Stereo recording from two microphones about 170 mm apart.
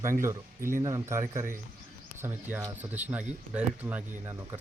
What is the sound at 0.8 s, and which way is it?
Speech, 20° right (ahead or behind).